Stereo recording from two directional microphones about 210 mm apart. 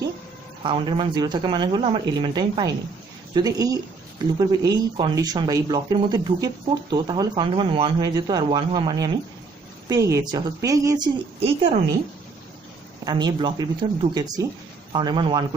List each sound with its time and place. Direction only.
0.7 s a woman's voice: 20° right (ahead or behind)
11.3 s speech: 25° right (ahead or behind)
13.0 s speech: 20° right (ahead or behind)